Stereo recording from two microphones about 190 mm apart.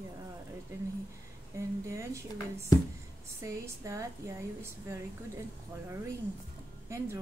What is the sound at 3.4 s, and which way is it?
Speech, 15° right (ahead or behind).